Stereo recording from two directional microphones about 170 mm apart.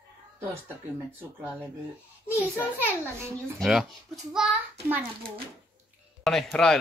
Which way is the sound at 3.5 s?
Centre (ahead or behind).